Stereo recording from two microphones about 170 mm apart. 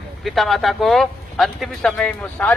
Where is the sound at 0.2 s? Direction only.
Centre (ahead or behind).